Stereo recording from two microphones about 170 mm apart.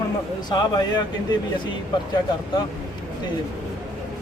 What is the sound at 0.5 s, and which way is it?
Speech, 25° left (ahead or behind).